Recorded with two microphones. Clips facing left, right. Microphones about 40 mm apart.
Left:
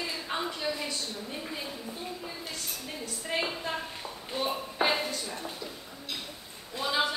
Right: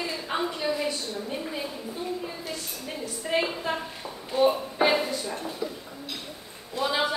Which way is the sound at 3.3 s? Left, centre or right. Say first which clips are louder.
Right 5 dB; centre.